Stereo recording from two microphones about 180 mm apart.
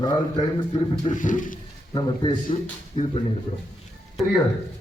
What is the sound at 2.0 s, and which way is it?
Speech, 25° left (ahead or behind).